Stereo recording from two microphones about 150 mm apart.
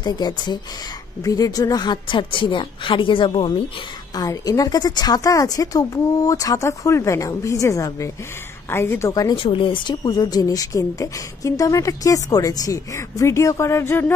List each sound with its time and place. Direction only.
0.0 s a woman's voice: 30° left (ahead or behind)
4.1 s a woman's voice: 25° left (ahead or behind)
9.3 s a woman's voice: 35° left (ahead or behind); by 14.1 s 15° left (ahead or behind)